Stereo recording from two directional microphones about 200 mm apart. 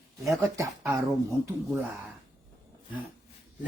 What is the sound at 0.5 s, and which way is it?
Speech, 15° right (ahead or behind).